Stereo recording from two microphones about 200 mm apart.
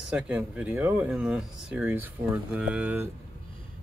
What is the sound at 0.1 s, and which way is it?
Speech, 5° right (ahead or behind).